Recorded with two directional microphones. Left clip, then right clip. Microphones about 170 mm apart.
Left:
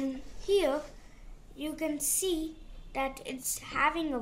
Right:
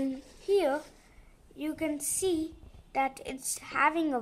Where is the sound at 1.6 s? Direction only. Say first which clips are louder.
Right 1 dB; 40° right (ahead or behind).